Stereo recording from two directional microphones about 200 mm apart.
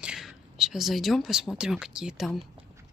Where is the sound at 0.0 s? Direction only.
5° right (ahead or behind).